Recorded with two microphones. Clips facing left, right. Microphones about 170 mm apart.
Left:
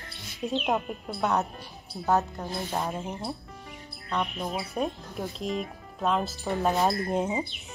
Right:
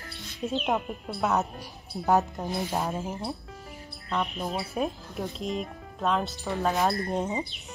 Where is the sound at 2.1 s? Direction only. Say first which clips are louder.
Right 2 dB; 15° right (ahead or behind).